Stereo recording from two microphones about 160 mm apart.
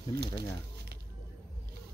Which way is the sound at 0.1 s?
80° right.